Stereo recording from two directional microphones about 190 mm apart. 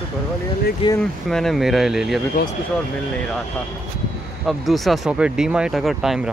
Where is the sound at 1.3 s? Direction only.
Centre (ahead or behind).